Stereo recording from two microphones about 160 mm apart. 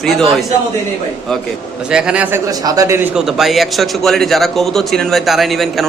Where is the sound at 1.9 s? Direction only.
5° right (ahead or behind).